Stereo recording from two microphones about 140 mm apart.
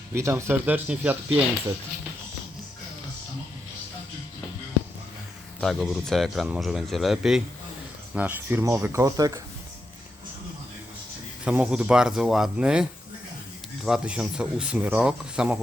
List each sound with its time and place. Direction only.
0.1 s speech: 20° right (ahead or behind)
5.5 s speech: centre (ahead or behind); by 9.4 s 25° right (ahead or behind)
11.4 s speech: 5° right (ahead or behind)